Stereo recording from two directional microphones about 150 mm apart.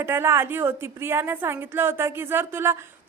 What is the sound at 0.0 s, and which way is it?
A woman's voice, 15° right (ahead or behind).